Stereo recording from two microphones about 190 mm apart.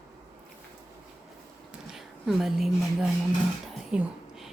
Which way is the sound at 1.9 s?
Centre (ahead or behind).